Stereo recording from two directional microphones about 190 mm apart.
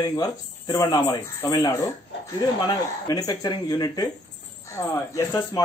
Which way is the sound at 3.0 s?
20° left (ahead or behind).